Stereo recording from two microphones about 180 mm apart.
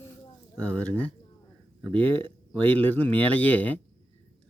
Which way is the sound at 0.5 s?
10° left (ahead or behind).